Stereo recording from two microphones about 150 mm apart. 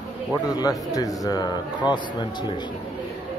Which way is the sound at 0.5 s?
25° left (ahead or behind).